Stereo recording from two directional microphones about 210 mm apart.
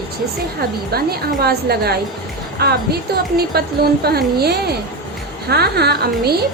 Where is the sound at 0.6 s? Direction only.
45° right (ahead or behind).